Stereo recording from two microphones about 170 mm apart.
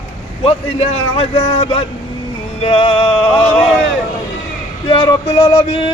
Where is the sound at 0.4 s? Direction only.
35° left (ahead or behind).